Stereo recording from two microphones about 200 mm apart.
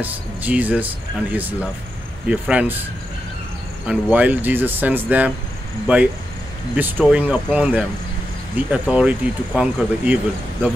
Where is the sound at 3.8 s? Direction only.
5° right (ahead or behind).